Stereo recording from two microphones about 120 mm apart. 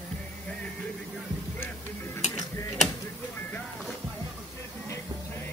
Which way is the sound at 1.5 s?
15° left (ahead or behind).